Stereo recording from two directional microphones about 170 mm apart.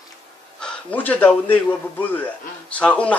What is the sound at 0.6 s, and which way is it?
A man's voice, 5° left (ahead or behind).